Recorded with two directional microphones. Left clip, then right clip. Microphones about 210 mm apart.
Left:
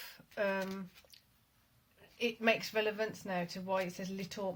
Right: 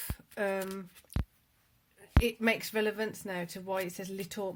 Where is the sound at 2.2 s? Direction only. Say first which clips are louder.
Right 1 dB; 50° right (ahead or behind).